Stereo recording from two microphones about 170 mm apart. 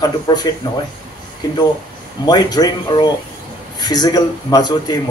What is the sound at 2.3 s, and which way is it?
A man's voice, 25° left (ahead or behind).